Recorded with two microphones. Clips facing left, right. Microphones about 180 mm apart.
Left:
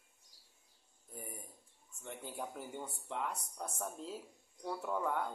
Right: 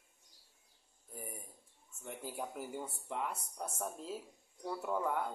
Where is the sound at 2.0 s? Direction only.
5° right (ahead or behind).